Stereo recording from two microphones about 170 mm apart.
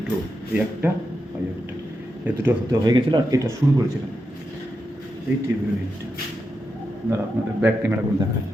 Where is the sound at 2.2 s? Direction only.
10° right (ahead or behind).